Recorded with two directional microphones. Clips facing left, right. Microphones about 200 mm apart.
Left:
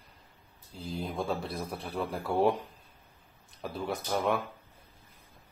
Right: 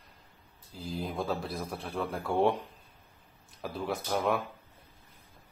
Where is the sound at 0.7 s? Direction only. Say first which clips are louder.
Even; centre (ahead or behind).